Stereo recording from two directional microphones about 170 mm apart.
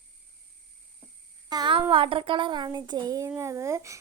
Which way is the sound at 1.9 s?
30° right (ahead or behind).